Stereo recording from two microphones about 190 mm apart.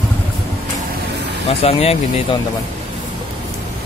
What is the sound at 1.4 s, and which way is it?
Speech, 30° left (ahead or behind).